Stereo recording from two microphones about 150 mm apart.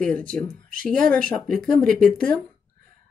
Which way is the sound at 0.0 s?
10° left (ahead or behind).